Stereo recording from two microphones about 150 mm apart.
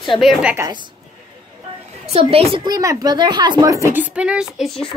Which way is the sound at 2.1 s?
40° right (ahead or behind).